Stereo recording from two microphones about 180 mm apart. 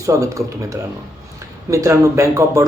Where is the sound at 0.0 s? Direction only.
15° right (ahead or behind).